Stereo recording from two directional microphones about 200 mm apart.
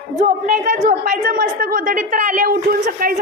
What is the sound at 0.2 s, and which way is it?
A woman's voice, 35° right (ahead or behind).